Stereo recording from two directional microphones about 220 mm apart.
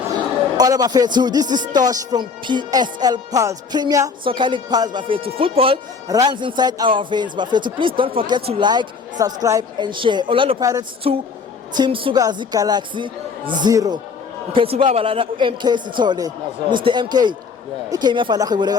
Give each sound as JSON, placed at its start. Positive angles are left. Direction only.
{"t": 0.5, "sound": "speech", "side_deg": -15}